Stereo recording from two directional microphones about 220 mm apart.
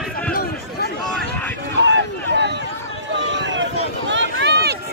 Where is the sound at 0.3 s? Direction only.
40° left (ahead or behind).